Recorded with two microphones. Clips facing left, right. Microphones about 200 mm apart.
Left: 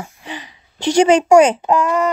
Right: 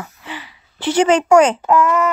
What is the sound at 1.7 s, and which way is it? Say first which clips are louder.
Speech: right 1 dB; 25° left (ahead or behind).